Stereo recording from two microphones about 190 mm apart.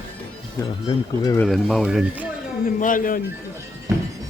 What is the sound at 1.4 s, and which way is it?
Speech, centre (ahead or behind).